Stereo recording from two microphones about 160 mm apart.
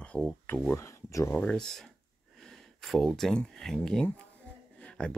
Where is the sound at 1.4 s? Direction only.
5° left (ahead or behind).